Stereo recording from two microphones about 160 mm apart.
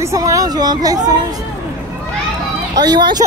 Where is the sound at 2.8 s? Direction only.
25° right (ahead or behind).